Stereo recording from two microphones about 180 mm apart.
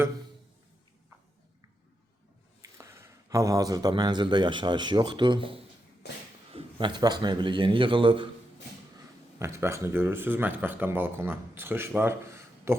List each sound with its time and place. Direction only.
2.7 s a man's voice: 15° right (ahead or behind)
9.4 s speech: 15° right (ahead or behind)